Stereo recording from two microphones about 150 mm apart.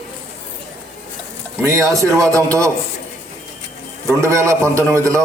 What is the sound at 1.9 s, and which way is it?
Speech, 20° right (ahead or behind).